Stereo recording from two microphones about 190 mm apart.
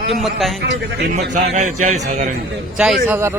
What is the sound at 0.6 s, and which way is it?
Speech, 65° right (ahead or behind).